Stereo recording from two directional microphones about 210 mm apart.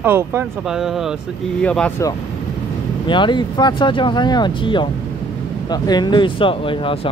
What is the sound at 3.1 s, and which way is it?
Speech, 20° left (ahead or behind).